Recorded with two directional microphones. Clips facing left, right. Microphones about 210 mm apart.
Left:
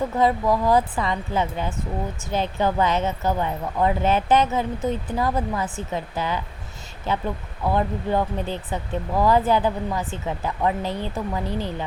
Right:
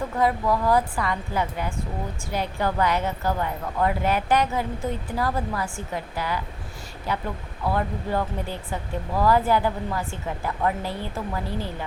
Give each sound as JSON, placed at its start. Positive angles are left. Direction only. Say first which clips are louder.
{"t": 0.2, "sound": "speech", "louder": "left 2 dB", "side_deg": 20}